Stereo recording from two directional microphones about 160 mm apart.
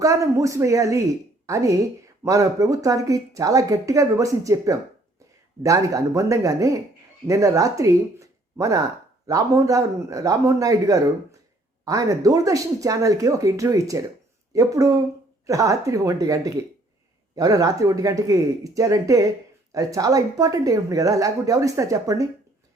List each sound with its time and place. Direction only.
0.0 s a woman's voice: 20° right (ahead or behind)